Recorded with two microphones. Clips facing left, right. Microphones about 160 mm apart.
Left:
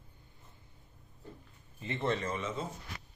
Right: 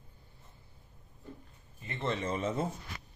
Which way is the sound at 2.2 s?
30° right (ahead or behind).